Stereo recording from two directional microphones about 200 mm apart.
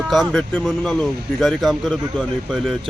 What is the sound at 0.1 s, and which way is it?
Speech, centre (ahead or behind).